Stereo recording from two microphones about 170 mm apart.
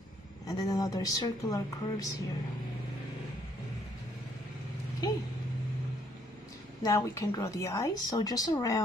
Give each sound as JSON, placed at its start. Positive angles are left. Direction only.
{"t": 0.5, "sound": "a woman's voice", "side_deg": 20}
{"t": 6.8, "sound": "a woman's voice", "side_deg": 20}